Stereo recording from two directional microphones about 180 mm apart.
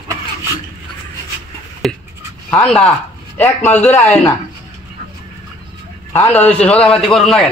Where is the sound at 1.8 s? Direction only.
Centre (ahead or behind).